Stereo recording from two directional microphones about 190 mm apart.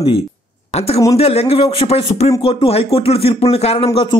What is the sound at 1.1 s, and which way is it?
Speech, 35° left (ahead or behind).